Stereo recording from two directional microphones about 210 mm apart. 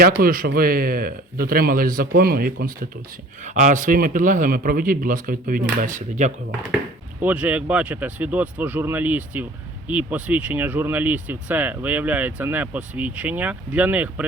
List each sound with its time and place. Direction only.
0.2 s a man's voice: 45° right (ahead or behind)
7.2 s speech: 5° right (ahead or behind)